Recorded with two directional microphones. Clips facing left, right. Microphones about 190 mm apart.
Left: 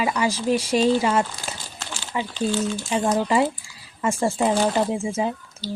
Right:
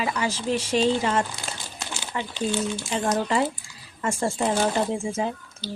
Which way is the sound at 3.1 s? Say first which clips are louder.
Left 3 dB; 5° left (ahead or behind).